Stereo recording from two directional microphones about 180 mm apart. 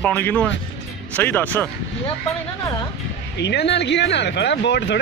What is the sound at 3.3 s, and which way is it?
Speech, 70° left (ahead or behind).